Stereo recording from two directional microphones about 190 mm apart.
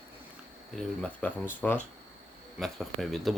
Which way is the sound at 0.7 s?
5° left (ahead or behind).